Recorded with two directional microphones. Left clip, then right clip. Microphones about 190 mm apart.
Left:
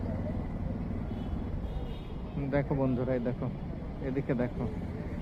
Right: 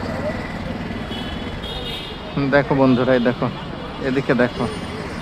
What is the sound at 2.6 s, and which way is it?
A man's voice, 35° right (ahead or behind).